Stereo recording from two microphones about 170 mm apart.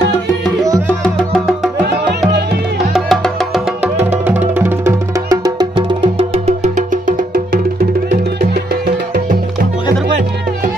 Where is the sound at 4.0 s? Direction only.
10° right (ahead or behind).